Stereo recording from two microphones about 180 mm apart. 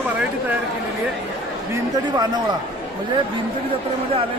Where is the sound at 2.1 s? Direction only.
20° right (ahead or behind).